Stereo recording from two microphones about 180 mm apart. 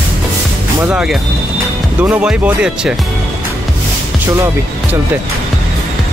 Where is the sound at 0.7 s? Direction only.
5° right (ahead or behind).